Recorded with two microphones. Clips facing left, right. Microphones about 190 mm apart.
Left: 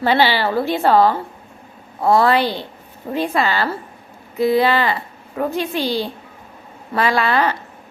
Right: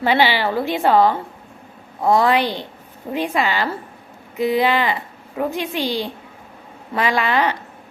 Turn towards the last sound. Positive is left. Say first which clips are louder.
# left 1 dB
turn(degrees=-15)  # may be behind; listen again after turning